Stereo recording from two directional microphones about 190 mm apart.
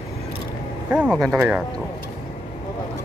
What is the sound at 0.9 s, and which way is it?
Speech, 5° right (ahead or behind).